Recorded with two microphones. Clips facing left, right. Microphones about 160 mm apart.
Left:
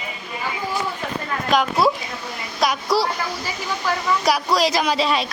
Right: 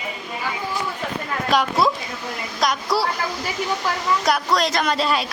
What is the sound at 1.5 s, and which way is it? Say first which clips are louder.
Speech: left 1 dB; centre (ahead or behind).